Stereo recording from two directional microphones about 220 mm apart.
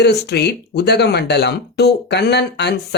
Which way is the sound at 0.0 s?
50° left (ahead or behind).